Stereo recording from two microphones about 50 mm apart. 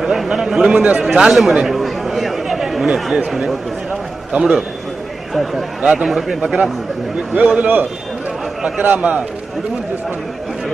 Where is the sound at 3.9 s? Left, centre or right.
Right.